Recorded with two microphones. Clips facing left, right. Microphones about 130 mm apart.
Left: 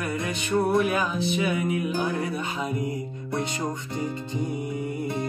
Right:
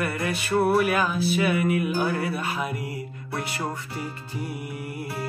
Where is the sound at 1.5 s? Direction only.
25° left (ahead or behind).